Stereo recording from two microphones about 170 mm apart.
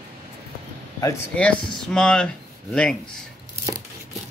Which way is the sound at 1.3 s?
5° left (ahead or behind).